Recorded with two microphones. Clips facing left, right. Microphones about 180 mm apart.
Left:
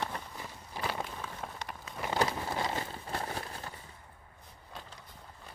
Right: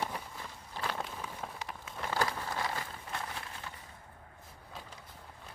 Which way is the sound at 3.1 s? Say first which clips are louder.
Left 4 dB; 40° left (ahead or behind).